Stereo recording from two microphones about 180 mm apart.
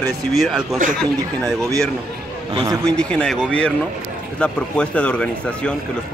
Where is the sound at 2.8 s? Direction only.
5° left (ahead or behind).